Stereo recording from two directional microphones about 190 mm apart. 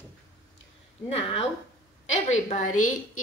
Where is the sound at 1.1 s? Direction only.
30° left (ahead or behind).